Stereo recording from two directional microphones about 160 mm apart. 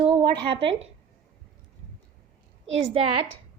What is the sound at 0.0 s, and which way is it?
Speech, 30° right (ahead or behind).